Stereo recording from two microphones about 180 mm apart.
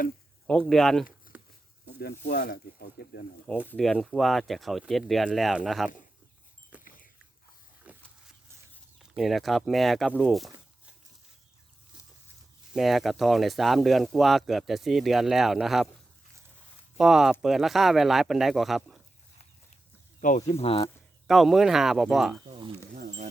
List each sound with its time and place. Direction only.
0.7 s speech: centre (ahead or behind)
1.3 s a sound: 10° right (ahead or behind)
2.0 s speech: 60° left (ahead or behind)
3.7 s speech: 5° left (ahead or behind)
6.8 s dog: 50° left (ahead or behind)
7.9 s a sound: 5° right (ahead or behind)
9.0 s speech: centre (ahead or behind)
12.7 s speech: centre (ahead or behind)
17.0 s speech: 5° right (ahead or behind)
20.5 s speech: 30° left (ahead or behind)
21.2 s speech: centre (ahead or behind)
23.0 s a sound: 40° right (ahead or behind)